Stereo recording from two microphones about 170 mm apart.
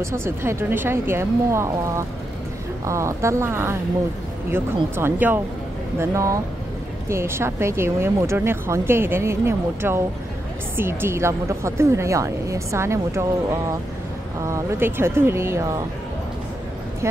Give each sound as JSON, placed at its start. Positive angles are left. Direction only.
{"t": 0.0, "sound": "speech", "side_deg": -15}
{"t": 4.9, "sound": "speech", "side_deg": -15}